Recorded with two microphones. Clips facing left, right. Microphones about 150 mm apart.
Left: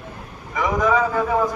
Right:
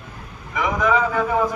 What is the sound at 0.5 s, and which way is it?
Vehicle, centre (ahead or behind).